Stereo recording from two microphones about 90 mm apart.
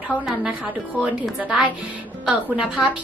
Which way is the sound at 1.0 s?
15° right (ahead or behind).